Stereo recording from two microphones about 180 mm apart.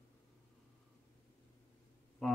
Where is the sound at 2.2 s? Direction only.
Centre (ahead or behind).